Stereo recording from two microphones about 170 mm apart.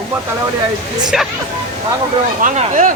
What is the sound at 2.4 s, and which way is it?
Speech, 50° right (ahead or behind).